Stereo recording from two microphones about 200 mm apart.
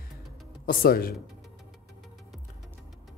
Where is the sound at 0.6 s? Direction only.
45° left (ahead or behind).